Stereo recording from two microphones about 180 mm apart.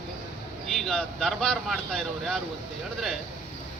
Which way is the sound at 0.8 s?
Centre (ahead or behind).